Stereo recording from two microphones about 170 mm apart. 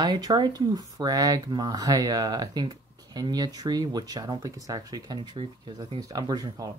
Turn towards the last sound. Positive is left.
turn(degrees=-25)  # may be behind; listen again after turning